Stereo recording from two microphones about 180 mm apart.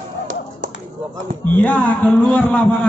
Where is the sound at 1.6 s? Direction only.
10° left (ahead or behind).